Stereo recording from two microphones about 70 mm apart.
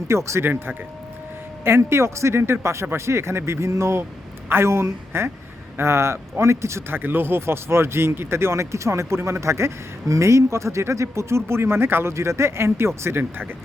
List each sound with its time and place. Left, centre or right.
0.1 s speech: right
0.4 s speech: right
7.0 s speech: right